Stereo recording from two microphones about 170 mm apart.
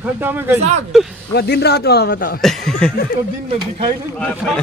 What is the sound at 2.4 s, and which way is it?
Speech, centre (ahead or behind).